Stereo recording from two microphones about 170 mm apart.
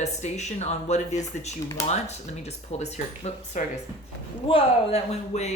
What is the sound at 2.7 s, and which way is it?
Speech, 40° left (ahead or behind).